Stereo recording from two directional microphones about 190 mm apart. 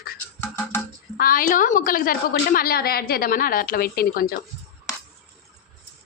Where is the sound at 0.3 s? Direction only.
15° left (ahead or behind).